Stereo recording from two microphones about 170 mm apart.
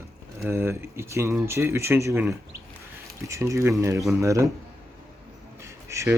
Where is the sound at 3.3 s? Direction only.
20° right (ahead or behind).